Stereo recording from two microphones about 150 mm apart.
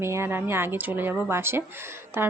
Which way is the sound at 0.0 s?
15° right (ahead or behind).